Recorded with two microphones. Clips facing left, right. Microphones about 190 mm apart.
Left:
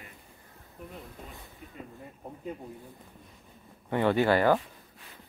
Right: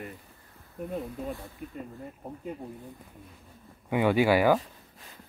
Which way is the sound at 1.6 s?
55° right (ahead or behind).